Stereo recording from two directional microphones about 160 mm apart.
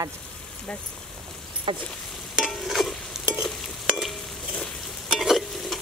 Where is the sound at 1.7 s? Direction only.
30° right (ahead or behind).